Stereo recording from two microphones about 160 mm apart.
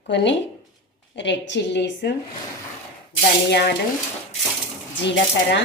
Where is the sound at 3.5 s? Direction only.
90° left.